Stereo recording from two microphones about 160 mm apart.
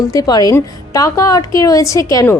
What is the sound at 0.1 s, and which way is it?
A woman's voice, 25° left (ahead or behind).